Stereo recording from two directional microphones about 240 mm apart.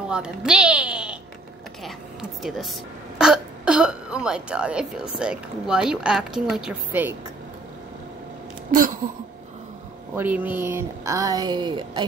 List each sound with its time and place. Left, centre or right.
0.1 s speech: centre
2.4 s speech: centre
10.1 s speech: centre